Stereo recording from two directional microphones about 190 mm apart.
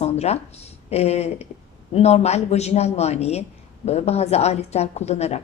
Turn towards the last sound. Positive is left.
turn(degrees=35)  # may be behind; listen again after turning